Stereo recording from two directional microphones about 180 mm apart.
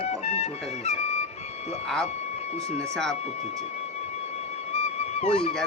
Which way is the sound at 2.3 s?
35° left (ahead or behind).